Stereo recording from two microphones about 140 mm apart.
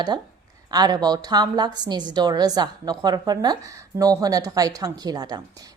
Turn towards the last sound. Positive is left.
turn(degrees=-25)  # may be behind; listen again after turning